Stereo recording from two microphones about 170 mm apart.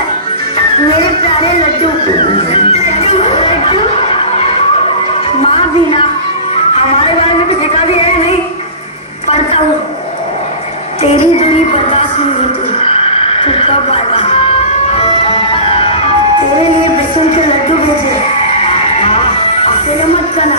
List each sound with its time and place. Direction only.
2.1 s music: 35° left (ahead or behind)
11.0 s music: 40° left (ahead or behind)
12.7 s a sound: 35° left (ahead or behind)
15.0 s music: 35° left (ahead or behind)
18.6 s music: 35° left (ahead or behind)